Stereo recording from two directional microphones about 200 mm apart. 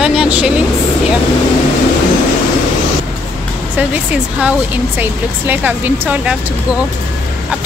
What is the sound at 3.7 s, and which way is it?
Speech, 5° right (ahead or behind).